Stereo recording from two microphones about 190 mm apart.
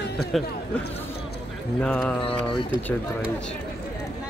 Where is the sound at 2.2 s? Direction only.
30° left (ahead or behind).